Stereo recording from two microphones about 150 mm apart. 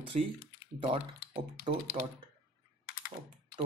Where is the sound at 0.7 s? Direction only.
35° right (ahead or behind).